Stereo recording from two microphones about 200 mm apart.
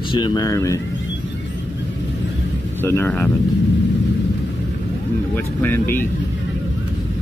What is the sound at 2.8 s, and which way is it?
Speech, 10° left (ahead or behind).